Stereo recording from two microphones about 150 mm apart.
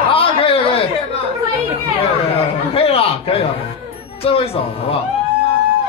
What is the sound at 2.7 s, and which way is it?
Chuckle, 40° left (ahead or behind).